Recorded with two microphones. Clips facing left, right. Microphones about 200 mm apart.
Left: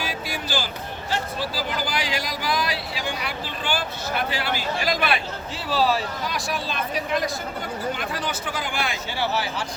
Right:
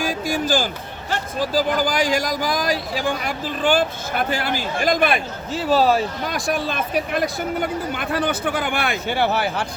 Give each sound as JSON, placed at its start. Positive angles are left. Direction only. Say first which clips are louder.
{"t": 0.0, "sound": "a man's voice", "louder": "right 8 dB", "side_deg": -45}